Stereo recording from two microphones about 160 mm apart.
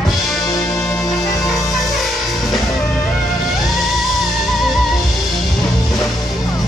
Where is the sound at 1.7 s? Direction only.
Centre (ahead or behind).